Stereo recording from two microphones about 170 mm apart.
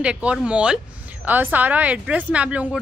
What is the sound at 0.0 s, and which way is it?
A woman's voice, 5° right (ahead or behind).